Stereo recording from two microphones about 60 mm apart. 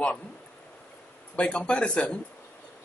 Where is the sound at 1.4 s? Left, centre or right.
Centre.